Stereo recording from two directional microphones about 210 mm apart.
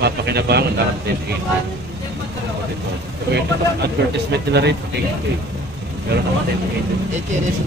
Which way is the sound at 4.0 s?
55° right (ahead or behind).